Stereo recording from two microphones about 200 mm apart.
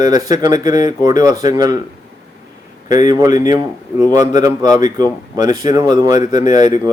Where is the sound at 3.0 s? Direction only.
20° right (ahead or behind).